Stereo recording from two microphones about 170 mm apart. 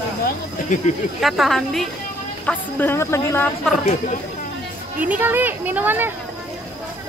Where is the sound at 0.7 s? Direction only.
50° left (ahead or behind).